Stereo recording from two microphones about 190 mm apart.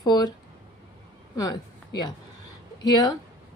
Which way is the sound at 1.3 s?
20° left (ahead or behind).